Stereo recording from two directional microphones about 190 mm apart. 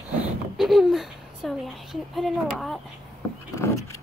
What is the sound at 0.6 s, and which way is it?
Speech, centre (ahead or behind).